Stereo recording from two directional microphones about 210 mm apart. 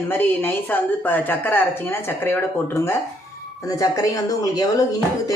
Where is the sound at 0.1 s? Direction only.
10° left (ahead or behind).